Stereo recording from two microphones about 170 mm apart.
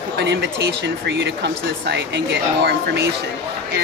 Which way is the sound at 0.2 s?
90° right.